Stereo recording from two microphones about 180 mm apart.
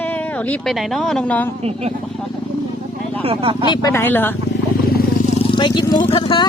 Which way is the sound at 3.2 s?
30° right (ahead or behind).